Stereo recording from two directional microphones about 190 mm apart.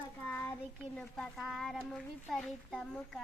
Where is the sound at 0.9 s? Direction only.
Centre (ahead or behind).